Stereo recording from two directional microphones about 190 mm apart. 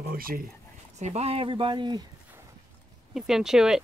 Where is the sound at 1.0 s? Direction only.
35° right (ahead or behind).